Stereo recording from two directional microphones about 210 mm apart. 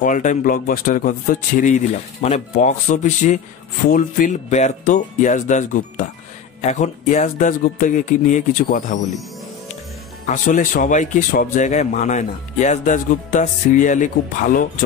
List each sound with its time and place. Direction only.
0.0 s speech: 35° left (ahead or behind)
10.2 s speech: 35° left (ahead or behind)